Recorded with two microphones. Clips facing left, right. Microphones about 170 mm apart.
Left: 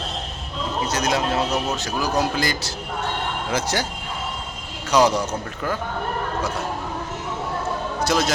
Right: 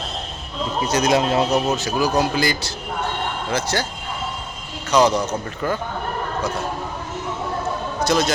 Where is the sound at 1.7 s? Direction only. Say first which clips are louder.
Right 3 dB; 5° right (ahead or behind).